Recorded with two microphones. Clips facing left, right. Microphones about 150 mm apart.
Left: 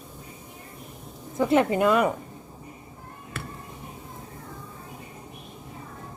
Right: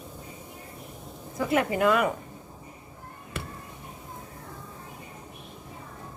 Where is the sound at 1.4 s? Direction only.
25° left (ahead or behind).